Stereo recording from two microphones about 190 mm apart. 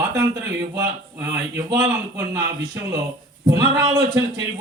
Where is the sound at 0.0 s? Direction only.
15° right (ahead or behind).